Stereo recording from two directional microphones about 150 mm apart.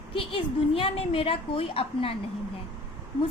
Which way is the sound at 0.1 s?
35° left (ahead or behind).